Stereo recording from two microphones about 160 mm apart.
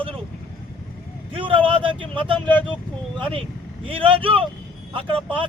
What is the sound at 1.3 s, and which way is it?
Speech, 35° right (ahead or behind).